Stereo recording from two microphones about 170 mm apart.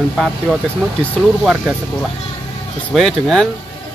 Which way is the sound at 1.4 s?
Centre (ahead or behind).